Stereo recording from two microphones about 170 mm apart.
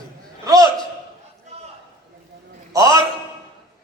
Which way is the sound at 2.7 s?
20° right (ahead or behind).